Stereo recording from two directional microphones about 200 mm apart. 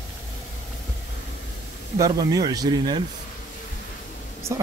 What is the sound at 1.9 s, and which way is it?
Speech, 20° right (ahead or behind).